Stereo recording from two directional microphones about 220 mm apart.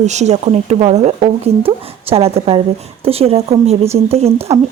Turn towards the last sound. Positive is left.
turn(degrees=-25)  # may be behind; listen again after turning